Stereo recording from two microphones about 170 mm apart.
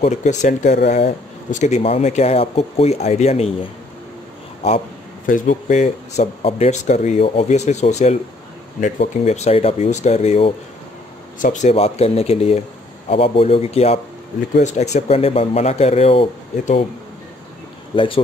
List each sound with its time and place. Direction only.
0.0 s speech: 45° left (ahead or behind)
5.2 s speech: 50° left (ahead or behind)
11.3 s speech: 50° left (ahead or behind)
17.9 s speech: 30° left (ahead or behind)